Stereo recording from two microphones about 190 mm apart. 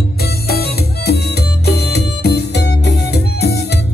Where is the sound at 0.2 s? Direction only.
55° left (ahead or behind).